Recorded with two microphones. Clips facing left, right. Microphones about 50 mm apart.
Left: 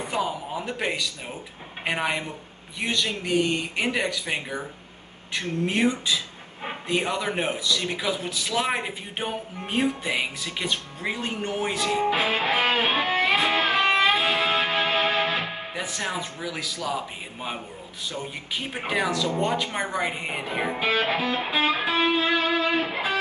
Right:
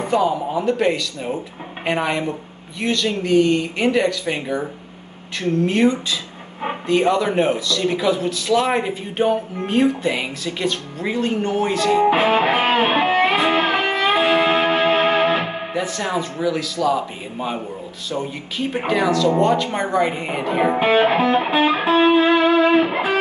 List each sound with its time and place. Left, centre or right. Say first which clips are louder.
0.7 s speech: right 9 dB; centre
5.7 s speech: right 3 dB; centre
7.5 s speech: right 4 dB; centre
7.8 s speech: right 9 dB; centre
12.0 s music: right 8 dB; right
16.4 s speech: right 12 dB; centre
18.9 s speech: right 7 dB; centre
20.8 s music: right 8 dB; right